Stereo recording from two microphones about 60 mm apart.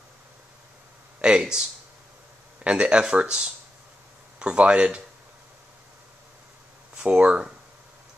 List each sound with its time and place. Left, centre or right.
1.2 s speech: centre
7.0 s speech: centre